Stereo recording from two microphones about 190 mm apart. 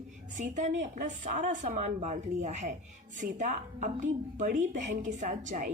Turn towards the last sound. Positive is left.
turn(degrees=-40)  # may be behind; listen again after turning